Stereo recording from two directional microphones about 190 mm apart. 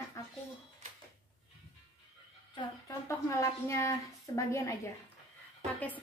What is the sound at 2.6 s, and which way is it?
Speech, 15° left (ahead or behind).